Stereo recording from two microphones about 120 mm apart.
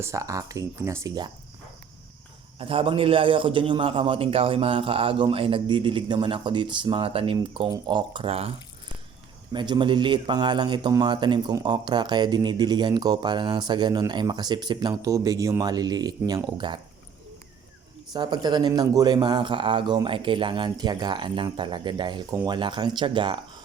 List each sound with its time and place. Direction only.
0.0 s speech: 25° right (ahead or behind)
2.6 s a man's voice: 50° right (ahead or behind)
9.5 s speech: 40° right (ahead or behind)
18.1 s speech: 35° right (ahead or behind)